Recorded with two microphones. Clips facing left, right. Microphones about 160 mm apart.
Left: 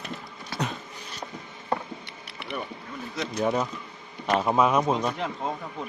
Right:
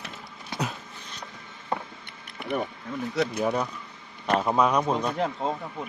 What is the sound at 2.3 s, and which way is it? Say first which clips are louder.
Mechanisms: right 5 dB; 45° right (ahead or behind).